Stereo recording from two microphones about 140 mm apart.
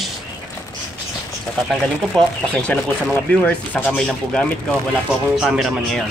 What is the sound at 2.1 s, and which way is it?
Speech, 5° left (ahead or behind).